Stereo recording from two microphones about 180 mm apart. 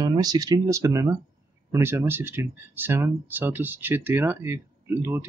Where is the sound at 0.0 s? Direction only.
25° right (ahead or behind).